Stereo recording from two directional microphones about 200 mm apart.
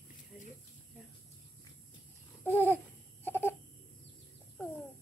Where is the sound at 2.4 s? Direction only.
10° left (ahead or behind).